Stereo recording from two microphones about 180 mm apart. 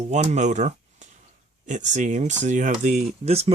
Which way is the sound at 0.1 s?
40° right (ahead or behind).